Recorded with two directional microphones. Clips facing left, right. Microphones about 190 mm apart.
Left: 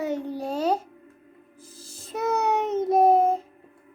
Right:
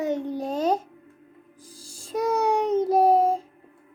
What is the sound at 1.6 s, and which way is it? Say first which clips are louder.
Music: left 1 dB; 10° right (ahead or behind).